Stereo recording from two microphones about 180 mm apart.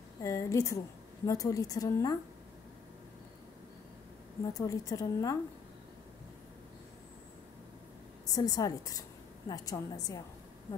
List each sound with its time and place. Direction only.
0.2 s a woman's voice: 20° left (ahead or behind)
4.6 s a woman's voice: 20° left (ahead or behind)
8.3 s a woman's voice: 20° left (ahead or behind)